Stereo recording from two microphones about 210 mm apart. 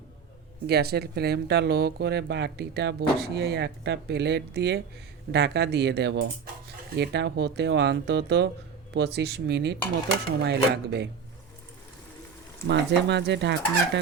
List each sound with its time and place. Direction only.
0.7 s speech: 50° right (ahead or behind)
12.6 s speech: 55° right (ahead or behind)